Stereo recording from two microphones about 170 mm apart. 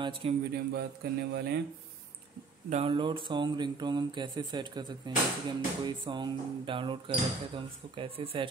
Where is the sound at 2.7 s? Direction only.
35° right (ahead or behind).